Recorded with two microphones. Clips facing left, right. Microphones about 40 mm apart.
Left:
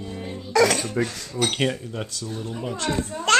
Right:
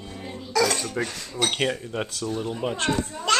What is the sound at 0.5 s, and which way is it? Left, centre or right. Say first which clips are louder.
Speech: left 4 dB; left.